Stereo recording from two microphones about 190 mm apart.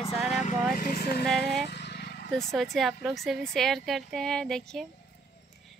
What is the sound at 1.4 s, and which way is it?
Vehicle, 60° left (ahead or behind).